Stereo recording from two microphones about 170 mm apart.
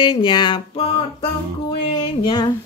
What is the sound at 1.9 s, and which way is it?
Music, 25° left (ahead or behind).